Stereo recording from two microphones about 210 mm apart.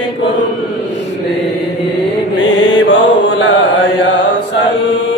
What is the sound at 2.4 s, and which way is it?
Mantra, 60° left (ahead or behind).